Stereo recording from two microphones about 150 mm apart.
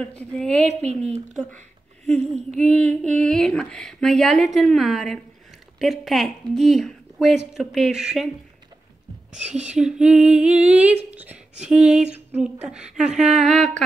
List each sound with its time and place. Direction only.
0.0 s a woman's voice: 5° left (ahead or behind)
0.8 s a woman's voice: 45° right (ahead or behind)
2.7 s a woman's voice: 5° left (ahead or behind)
9.3 s a woman's voice: 50° right (ahead or behind)
9.7 s a sound: 5° right (ahead or behind)
11.6 s a woman's voice: 5° right (ahead or behind)